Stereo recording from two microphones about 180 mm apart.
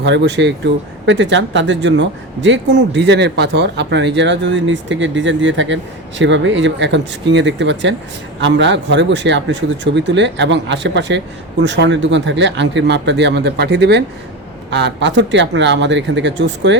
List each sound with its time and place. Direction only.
0.0 s speech: 75° right (ahead or behind)
11.6 s speech: 90° right